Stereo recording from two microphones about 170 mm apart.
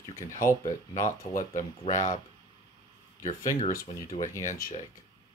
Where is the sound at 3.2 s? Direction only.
45° left (ahead or behind).